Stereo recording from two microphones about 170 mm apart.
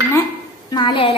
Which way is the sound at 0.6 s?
25° left (ahead or behind).